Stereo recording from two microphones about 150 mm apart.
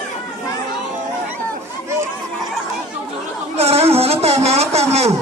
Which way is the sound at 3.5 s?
45° right (ahead or behind).